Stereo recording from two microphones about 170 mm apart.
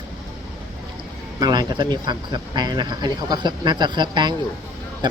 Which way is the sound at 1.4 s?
25° right (ahead or behind).